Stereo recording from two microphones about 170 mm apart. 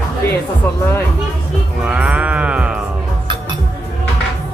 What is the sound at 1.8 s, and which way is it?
Sheep, 5° right (ahead or behind).